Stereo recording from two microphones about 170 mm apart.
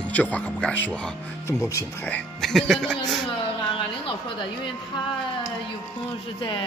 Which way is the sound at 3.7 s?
30° left (ahead or behind).